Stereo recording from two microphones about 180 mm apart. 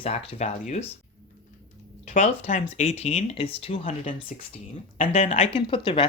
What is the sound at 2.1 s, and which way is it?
Speech, 40° left (ahead or behind).